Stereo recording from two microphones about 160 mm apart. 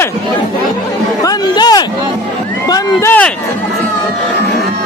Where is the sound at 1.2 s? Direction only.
25° left (ahead or behind).